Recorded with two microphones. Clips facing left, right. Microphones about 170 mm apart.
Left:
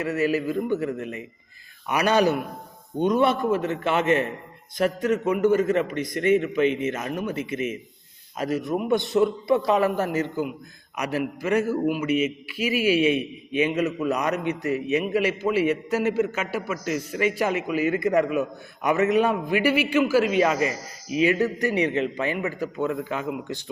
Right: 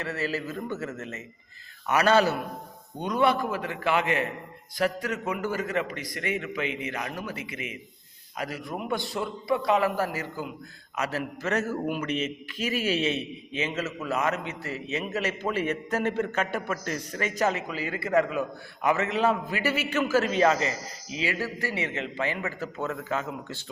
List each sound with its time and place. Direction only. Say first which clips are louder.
0.0 s a man's voice: left 7 dB; 15° left (ahead or behind)
6.7 s a man's voice: left 9 dB; 15° right (ahead or behind)
6.9 s a man's voice: left 6 dB; 20° left (ahead or behind)